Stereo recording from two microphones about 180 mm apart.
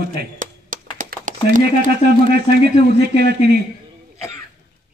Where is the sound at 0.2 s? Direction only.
50° right (ahead or behind).